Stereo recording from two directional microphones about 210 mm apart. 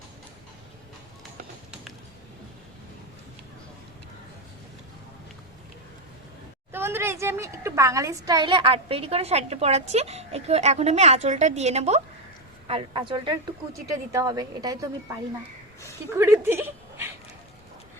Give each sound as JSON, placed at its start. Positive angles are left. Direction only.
{"t": 6.7, "sound": "a woman's voice", "side_deg": -10}